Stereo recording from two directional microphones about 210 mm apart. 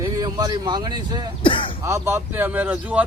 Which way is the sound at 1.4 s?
25° left (ahead or behind).